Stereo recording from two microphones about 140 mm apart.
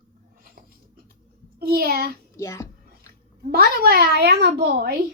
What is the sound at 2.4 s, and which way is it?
Speech, 20° left (ahead or behind).